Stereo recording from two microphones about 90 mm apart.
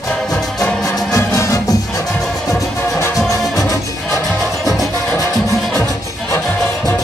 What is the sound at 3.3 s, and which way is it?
Music, 40° left (ahead or behind).